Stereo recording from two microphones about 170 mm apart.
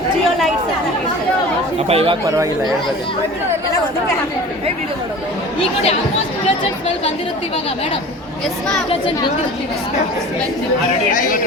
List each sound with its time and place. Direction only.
1.9 s speech: 35° right (ahead or behind)
11.1 s speech: 50° left (ahead or behind)